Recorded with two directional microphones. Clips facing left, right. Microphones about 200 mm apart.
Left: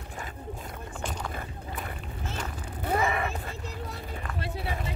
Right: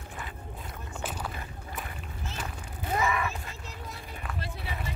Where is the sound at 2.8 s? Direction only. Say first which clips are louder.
Left 2 dB; 55° left (ahead or behind).